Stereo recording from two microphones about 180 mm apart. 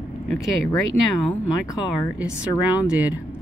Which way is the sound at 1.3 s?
20° left (ahead or behind).